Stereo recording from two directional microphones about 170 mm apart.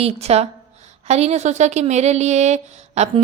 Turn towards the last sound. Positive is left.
turn(degrees=-40)  # may be behind; listen again after turning